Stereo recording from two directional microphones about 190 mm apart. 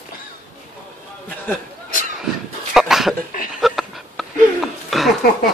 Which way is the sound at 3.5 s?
Centre (ahead or behind).